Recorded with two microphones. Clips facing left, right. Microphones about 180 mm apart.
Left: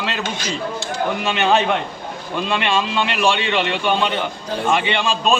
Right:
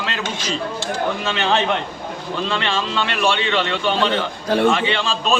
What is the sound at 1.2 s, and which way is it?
A man's voice, 15° left (ahead or behind).